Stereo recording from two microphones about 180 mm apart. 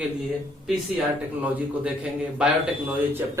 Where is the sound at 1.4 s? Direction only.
10° right (ahead or behind).